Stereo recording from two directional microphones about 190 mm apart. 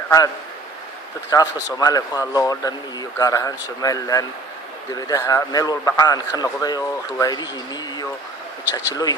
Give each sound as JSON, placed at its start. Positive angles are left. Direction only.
{"t": 1.3, "sound": "a man's voice", "side_deg": 20}